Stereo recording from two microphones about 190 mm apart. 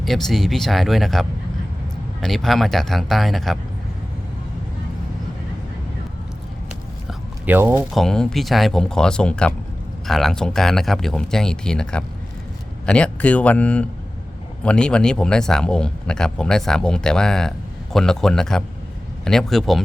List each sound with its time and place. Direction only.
0.0 s a man's voice: centre (ahead or behind)
7.1 s a sound: 10° right (ahead or behind)
7.9 s a man's voice: 5° left (ahead or behind)